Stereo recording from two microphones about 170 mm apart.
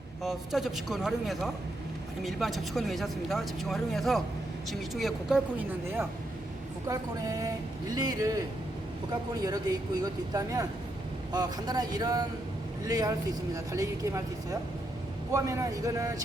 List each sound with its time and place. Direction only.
0.2 s speech: centre (ahead or behind)
6.8 s speech: 20° right (ahead or behind)
9.4 s speech: 25° right (ahead or behind)
15.3 s speech: 20° right (ahead or behind)